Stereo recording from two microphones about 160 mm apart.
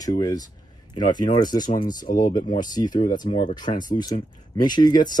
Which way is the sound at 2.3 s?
25° left (ahead or behind).